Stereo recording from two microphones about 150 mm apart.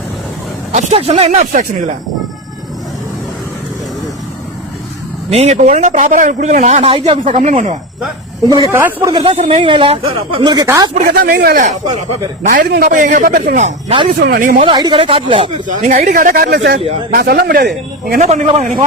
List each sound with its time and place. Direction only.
0.7 s a man's voice: 50° right (ahead or behind)
5.3 s a man's voice: 45° right (ahead or behind)
6.9 s speech: 35° right (ahead or behind)
7.3 s a man's voice: 55° right (ahead or behind)
8.4 s speech: 25° right (ahead or behind)
9.2 s speech: 40° right (ahead or behind)
10.4 s speech: 25° right (ahead or behind)
10.9 s a man's voice: 70° right (ahead or behind); by 13.9 s 50° right (ahead or behind)
14.1 s speech: 80° right
14.6 s speech: 30° right (ahead or behind)
15.6 s speech: 60° right (ahead or behind); by 17.7 s 90° right
18.0 s speech: 70° right (ahead or behind)